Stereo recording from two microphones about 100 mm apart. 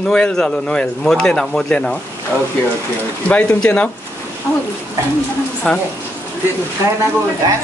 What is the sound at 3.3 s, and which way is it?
Speech, 15° left (ahead or behind).